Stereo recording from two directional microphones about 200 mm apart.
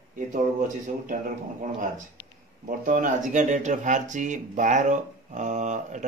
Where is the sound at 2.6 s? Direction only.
40° right (ahead or behind).